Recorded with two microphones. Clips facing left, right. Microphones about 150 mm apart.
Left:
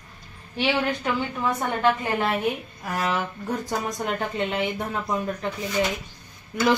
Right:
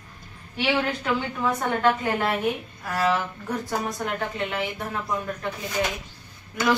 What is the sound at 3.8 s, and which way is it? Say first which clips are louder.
A woman's voice: left 1 dB; 20° left (ahead or behind).